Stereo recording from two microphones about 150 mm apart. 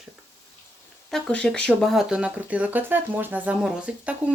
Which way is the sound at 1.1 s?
5° left (ahead or behind).